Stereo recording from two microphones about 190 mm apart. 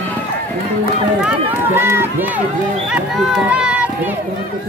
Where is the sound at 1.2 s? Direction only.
10° right (ahead or behind).